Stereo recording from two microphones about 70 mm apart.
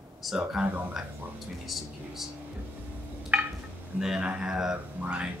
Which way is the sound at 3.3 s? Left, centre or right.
Centre.